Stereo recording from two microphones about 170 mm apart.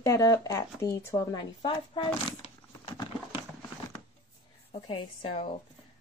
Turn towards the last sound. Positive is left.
turn(degrees=35)  # may be behind; listen again after turning